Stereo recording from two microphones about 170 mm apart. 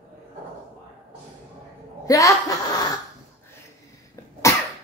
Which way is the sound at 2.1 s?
20° left (ahead or behind).